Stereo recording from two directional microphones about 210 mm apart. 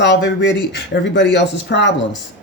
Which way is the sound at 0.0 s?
60° left (ahead or behind).